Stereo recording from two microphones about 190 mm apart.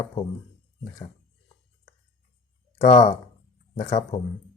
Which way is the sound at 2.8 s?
40° left (ahead or behind).